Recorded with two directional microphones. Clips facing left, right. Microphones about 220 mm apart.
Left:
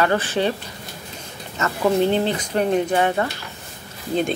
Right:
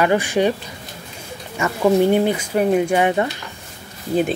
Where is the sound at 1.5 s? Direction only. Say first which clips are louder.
Right 3 dB; 10° right (ahead or behind).